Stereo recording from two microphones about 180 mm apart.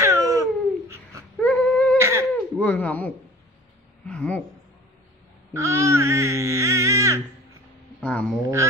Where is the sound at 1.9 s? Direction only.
15° right (ahead or behind).